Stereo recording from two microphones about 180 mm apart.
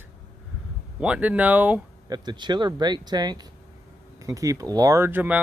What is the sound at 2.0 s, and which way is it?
Speech, 25° right (ahead or behind).